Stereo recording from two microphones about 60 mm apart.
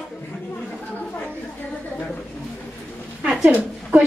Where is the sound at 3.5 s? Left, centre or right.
Right.